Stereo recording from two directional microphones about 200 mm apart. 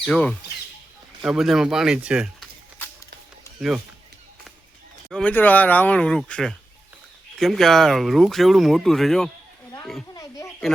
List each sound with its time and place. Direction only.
0.0 s speech: 5° left (ahead or behind)
5.1 s speech: 5° left (ahead or behind)
10.2 s a sound: 15° left (ahead or behind)